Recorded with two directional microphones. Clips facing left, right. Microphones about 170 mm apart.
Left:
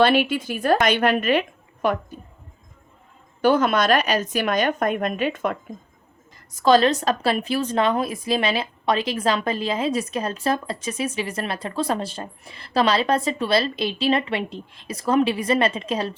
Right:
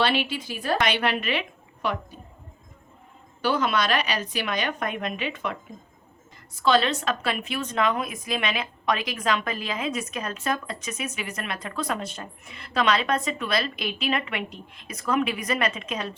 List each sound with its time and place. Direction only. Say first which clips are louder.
0.0 s a woman's voice: left 7 dB; 50° left (ahead or behind)
3.4 s a woman's voice: left 6 dB; 50° left (ahead or behind); by 16.1 s 30° left (ahead or behind)